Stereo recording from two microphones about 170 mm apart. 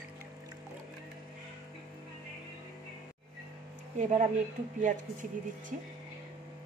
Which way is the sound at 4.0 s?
45° right (ahead or behind).